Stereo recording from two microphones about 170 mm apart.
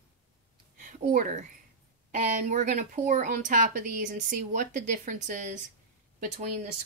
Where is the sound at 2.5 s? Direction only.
50° right (ahead or behind).